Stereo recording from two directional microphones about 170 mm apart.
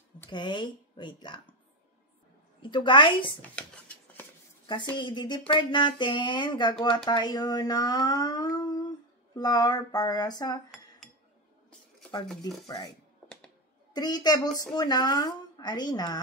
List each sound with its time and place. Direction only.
0.3 s a woman's voice: 25° left (ahead or behind)
2.6 s a woman's voice: 30° left (ahead or behind)
3.5 s a sound: 10° left (ahead or behind)
4.9 s a woman's voice: 25° left (ahead or behind)
12.6 s a woman's voice: 20° left (ahead or behind)
13.9 s a woman's voice: 25° left (ahead or behind)